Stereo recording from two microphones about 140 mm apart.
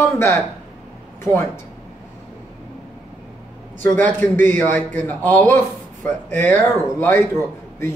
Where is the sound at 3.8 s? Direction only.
15° left (ahead or behind).